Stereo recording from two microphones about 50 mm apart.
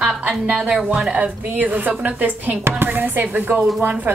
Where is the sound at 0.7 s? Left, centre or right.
Right.